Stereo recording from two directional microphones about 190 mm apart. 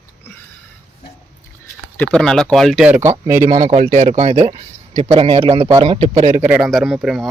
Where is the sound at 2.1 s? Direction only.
5° left (ahead or behind); by 3.7 s 15° right (ahead or behind).